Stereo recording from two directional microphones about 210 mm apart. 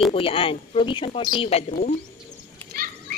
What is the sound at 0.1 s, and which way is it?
Speech, 25° left (ahead or behind).